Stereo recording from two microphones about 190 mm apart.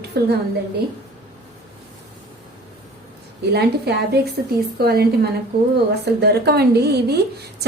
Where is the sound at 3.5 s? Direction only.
60° right (ahead or behind).